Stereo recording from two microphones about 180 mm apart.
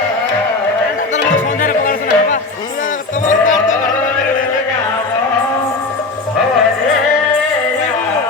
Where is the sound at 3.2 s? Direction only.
45° left (ahead or behind).